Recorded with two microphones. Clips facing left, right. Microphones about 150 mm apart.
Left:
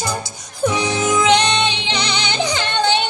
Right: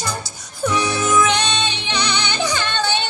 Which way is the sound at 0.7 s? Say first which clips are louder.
Left 1 dB; 15° left (ahead or behind).